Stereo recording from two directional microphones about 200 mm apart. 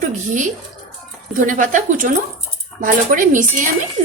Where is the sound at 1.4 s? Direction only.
40° right (ahead or behind).